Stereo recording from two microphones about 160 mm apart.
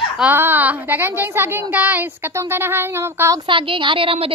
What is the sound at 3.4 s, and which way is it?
Speech, 35° right (ahead or behind).